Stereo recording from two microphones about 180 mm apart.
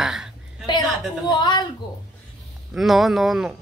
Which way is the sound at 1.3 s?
25° left (ahead or behind).